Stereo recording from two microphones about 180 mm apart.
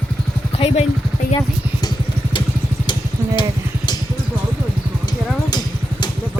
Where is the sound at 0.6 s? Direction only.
35° left (ahead or behind).